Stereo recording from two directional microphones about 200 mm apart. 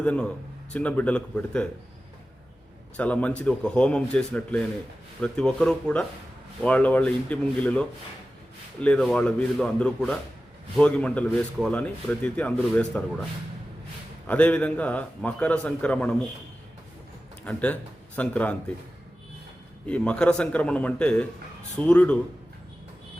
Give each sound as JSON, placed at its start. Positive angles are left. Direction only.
{"t": 0.0, "sound": "speech", "side_deg": 5}
{"t": 3.0, "sound": "speech", "side_deg": 5}
{"t": 14.3, "sound": "speech", "side_deg": 5}
{"t": 17.4, "sound": "speech", "side_deg": 5}
{"t": 19.9, "sound": "speech", "side_deg": 5}